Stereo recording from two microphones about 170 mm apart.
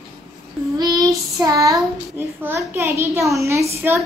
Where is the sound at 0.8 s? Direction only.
20° right (ahead or behind).